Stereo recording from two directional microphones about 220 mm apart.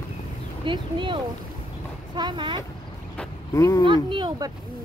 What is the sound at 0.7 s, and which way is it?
Speech, 20° right (ahead or behind).